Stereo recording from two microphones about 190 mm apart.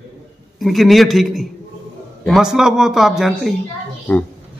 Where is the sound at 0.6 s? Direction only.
Centre (ahead or behind).